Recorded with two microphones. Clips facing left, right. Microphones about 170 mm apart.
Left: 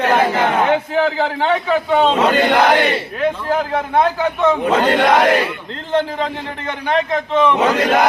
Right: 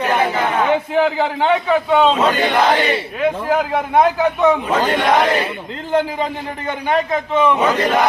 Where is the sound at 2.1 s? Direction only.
65° left (ahead or behind).